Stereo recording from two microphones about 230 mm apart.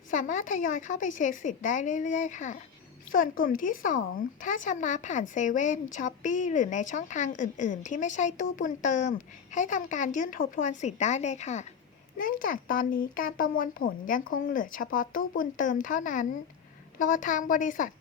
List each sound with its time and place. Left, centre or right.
0.1 s speech: left